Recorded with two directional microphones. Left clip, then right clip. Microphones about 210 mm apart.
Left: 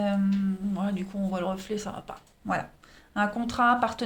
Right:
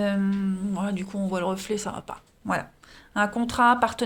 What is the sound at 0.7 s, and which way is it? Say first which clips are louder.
Speech: right 2 dB; 35° right (ahead or behind).